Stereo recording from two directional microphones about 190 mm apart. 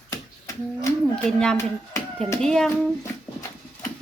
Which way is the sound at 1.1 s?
5° left (ahead or behind).